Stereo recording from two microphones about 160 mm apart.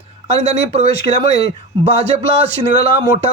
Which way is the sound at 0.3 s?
40° right (ahead or behind).